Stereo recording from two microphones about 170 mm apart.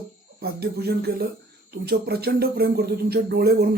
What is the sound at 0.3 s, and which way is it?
Speech, 70° right (ahead or behind).